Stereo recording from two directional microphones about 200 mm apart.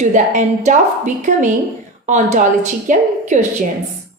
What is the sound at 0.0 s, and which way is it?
A woman's voice, 35° right (ahead or behind).